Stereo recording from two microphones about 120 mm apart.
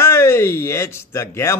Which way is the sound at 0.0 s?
20° left (ahead or behind).